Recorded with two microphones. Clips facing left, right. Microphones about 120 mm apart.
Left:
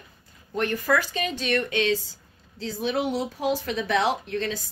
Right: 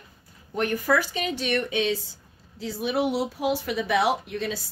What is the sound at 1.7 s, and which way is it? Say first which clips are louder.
Speech: left 1 dB; 90° left.